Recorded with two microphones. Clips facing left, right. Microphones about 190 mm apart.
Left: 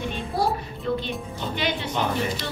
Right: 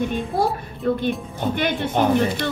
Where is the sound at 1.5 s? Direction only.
55° right (ahead or behind).